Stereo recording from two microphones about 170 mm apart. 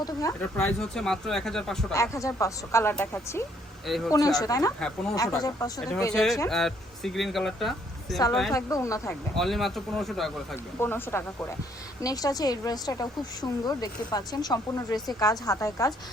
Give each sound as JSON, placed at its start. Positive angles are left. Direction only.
{"t": 0.0, "sound": "a woman's voice", "side_deg": 20}
{"t": 0.5, "sound": "speech", "side_deg": 5}
{"t": 1.9, "sound": "speech", "side_deg": 20}
{"t": 3.8, "sound": "speech", "side_deg": 0}
{"t": 4.1, "sound": "a woman's voice", "side_deg": 20}
{"t": 6.1, "sound": "speech", "side_deg": 0}
{"t": 8.5, "sound": "a woman's voice", "side_deg": 20}
{"t": 9.3, "sound": "speech", "side_deg": 0}
{"t": 10.8, "sound": "a woman's voice", "side_deg": 15}